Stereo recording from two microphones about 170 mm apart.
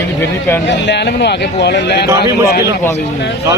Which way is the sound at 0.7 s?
90° left.